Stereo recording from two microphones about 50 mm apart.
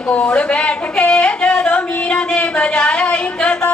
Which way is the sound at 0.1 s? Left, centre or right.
Left.